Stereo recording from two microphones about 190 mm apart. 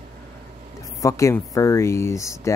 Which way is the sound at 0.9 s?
15° left (ahead or behind).